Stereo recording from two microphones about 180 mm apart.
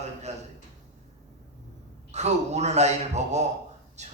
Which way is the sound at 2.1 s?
40° right (ahead or behind).